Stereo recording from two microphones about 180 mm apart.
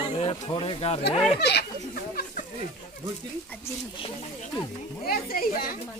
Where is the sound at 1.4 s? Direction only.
65° left (ahead or behind).